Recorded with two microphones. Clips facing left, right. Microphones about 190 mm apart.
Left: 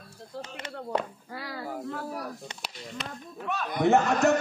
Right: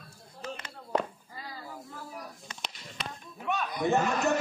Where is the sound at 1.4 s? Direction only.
75° left (ahead or behind).